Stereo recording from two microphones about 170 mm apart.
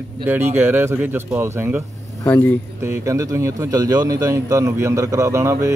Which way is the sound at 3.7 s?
20° right (ahead or behind).